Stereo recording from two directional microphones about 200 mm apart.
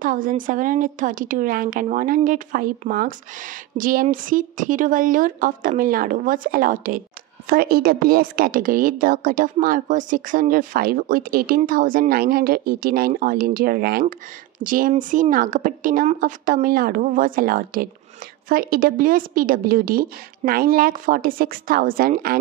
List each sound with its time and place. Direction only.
0.0 s a woman's voice: 45° right (ahead or behind)